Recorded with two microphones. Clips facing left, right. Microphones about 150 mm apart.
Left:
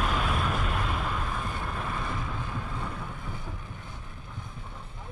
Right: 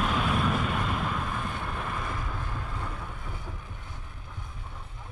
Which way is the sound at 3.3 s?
Centre (ahead or behind).